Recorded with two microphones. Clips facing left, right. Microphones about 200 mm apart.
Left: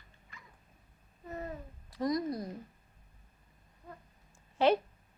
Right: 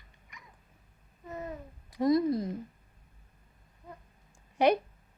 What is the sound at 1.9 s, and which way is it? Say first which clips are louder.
Speech: right 7 dB; 20° right (ahead or behind).